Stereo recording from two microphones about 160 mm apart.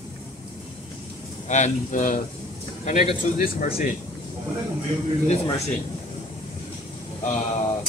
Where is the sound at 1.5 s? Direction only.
50° left (ahead or behind).